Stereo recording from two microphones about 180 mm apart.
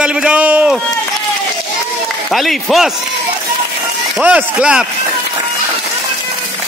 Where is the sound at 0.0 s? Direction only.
5° right (ahead or behind).